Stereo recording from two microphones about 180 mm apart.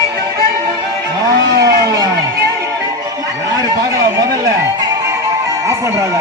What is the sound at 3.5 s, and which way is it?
Music, 20° right (ahead or behind).